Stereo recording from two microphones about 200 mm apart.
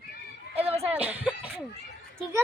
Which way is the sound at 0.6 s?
30° right (ahead or behind).